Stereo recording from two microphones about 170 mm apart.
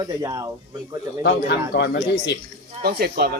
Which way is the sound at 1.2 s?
80° left.